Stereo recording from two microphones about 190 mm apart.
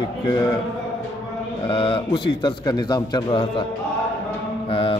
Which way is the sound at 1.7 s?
25° left (ahead or behind).